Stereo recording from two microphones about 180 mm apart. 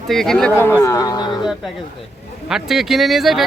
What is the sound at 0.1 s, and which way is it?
Speech, centre (ahead or behind).